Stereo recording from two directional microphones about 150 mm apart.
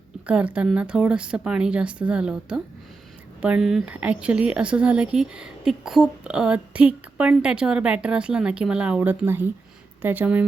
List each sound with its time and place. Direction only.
0.3 s speech: 5° right (ahead or behind)